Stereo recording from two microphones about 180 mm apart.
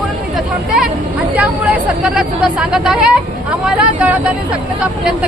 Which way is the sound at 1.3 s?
5° right (ahead or behind).